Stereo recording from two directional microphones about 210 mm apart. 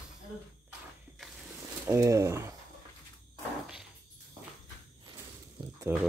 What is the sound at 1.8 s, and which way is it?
Speech, 15° right (ahead or behind).